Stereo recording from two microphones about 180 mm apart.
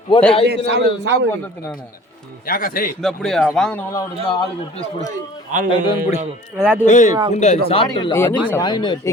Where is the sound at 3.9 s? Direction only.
20° left (ahead or behind).